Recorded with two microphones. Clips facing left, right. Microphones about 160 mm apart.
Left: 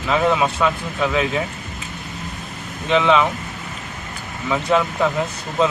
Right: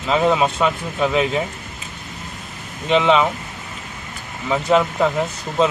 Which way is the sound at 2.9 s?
20° right (ahead or behind).